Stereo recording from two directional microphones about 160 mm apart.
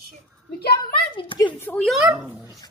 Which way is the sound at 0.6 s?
80° left.